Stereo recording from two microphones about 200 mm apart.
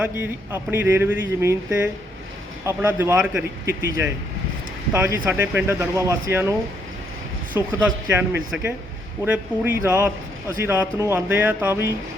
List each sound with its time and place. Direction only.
0.0 s speech: 10° right (ahead or behind)
7.7 s speech: 10° right (ahead or behind)